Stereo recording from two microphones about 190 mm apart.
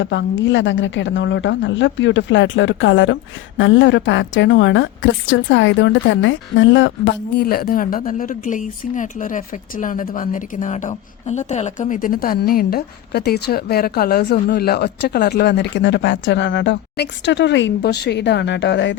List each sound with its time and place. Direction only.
0.0 s a woman's voice: 75° left (ahead or behind)